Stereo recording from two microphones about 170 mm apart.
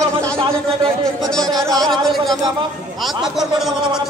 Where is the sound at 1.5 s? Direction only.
Centre (ahead or behind).